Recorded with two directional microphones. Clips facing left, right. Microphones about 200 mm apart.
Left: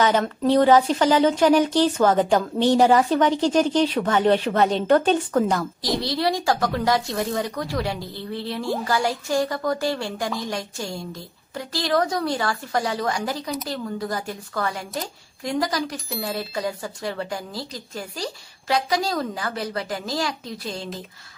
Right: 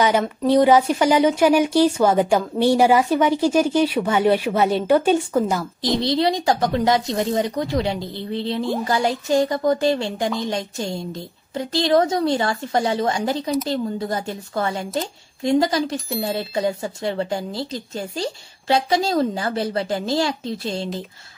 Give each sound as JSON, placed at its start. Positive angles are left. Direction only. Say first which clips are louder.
{"t": 0.0, "sound": "speech", "louder": "right 1 dB", "side_deg": -10}
{"t": 5.9, "sound": "speech", "louder": "right 4 dB", "side_deg": -20}